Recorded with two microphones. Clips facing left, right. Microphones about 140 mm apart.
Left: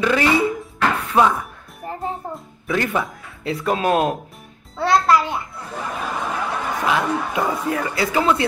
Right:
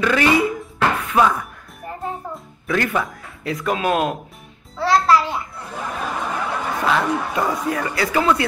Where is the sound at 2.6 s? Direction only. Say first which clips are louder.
Even; 20° left (ahead or behind).